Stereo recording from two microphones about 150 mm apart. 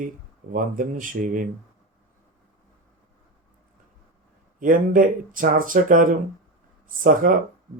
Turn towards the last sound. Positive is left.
turn(degrees=-65)  # may be behind; listen again after turning